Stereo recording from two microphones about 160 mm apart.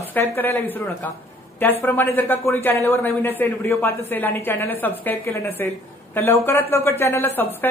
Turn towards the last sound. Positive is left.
turn(degrees=15)  # may be behind; listen again after turning